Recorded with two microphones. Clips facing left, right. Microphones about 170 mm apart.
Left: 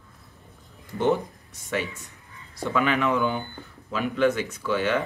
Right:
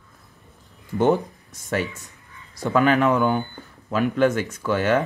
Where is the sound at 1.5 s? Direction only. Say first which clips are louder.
Right 4 dB; 40° right (ahead or behind).